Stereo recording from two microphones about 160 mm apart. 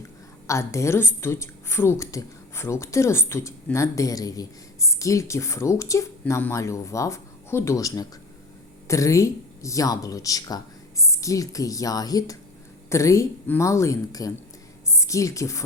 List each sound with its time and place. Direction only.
0.4 s a woman's voice: 20° left (ahead or behind)